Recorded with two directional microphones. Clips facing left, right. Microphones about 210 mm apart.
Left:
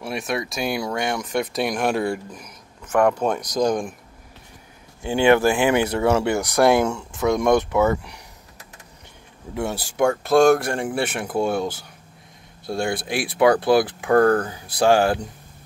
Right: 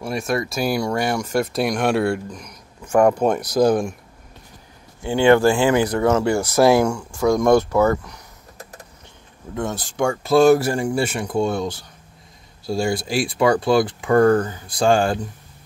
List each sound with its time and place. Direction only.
0.0 s speech: centre (ahead or behind)
2.8 s speech: 10° right (ahead or behind)
5.1 s speech: 20° left (ahead or behind)
7.7 s speech: 5° left (ahead or behind)
9.5 s speech: 10° left (ahead or behind)